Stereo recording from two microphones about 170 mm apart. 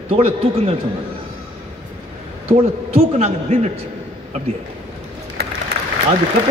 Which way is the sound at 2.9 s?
40° right (ahead or behind).